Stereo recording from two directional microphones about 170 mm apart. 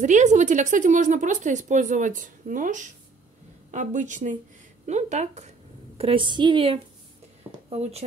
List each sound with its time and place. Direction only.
0.0 s a woman's voice: 45° right (ahead or behind)